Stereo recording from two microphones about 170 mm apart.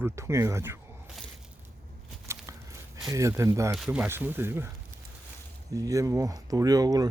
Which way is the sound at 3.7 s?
5° right (ahead or behind).